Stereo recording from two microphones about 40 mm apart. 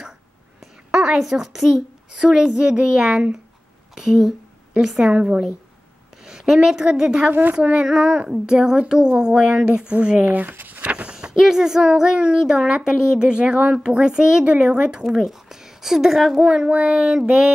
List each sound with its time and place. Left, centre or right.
0.9 s a woman's voice: centre
5.1 s speech: right
6.2 s a woman's voice: centre
7.2 s a woman's voice: right
7.7 s speech: centre
10.2 s a sound: right
10.9 s a sound: right
11.3 s speech: centre
15.0 s a woman's voice: centre
16.3 s speech: right
16.6 s speech: right